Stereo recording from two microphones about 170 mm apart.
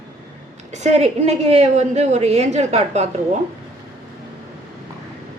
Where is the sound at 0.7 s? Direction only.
40° right (ahead or behind).